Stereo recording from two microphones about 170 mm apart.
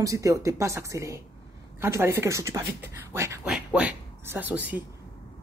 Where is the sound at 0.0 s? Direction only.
20° right (ahead or behind).